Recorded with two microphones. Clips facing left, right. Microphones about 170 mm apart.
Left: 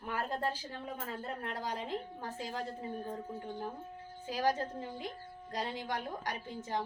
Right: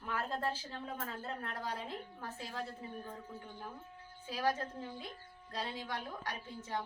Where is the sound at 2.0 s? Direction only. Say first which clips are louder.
Left 4 dB; 35° left (ahead or behind).